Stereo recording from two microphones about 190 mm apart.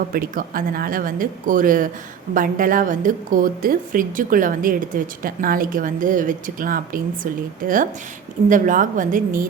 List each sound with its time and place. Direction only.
0.1 s a woman's voice: 50° right (ahead or behind)